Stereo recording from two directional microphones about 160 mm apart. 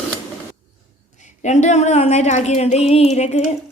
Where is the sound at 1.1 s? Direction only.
50° left (ahead or behind).